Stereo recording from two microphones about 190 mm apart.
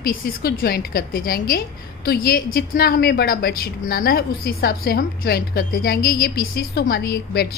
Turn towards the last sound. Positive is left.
turn(degrees=55)  # may be behind; listen again after turning